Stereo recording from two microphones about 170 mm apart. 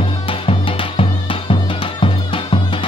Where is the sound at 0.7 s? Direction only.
30° left (ahead or behind).